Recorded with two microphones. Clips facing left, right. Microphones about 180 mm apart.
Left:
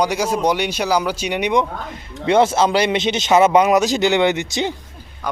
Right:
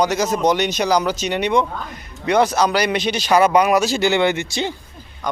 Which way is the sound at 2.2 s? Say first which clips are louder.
Left 2 dB; 25° left (ahead or behind).